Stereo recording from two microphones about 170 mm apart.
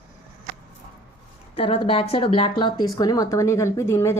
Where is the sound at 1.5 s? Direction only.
30° left (ahead or behind).